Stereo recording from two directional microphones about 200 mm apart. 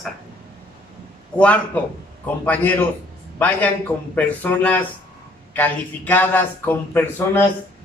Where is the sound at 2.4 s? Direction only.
10° left (ahead or behind).